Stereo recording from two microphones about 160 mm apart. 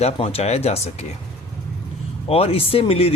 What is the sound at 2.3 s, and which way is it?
Speech, 40° left (ahead or behind).